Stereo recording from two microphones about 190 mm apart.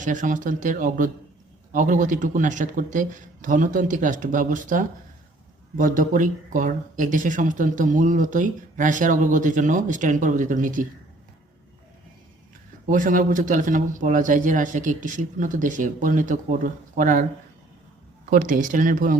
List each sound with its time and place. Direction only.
0.0 s speech: 40° right (ahead or behind)
12.9 s speech: 45° right (ahead or behind)
18.3 s speech: 45° right (ahead or behind)